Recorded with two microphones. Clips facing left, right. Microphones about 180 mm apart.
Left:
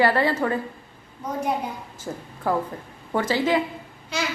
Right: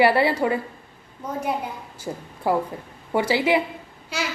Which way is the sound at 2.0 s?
10° right (ahead or behind).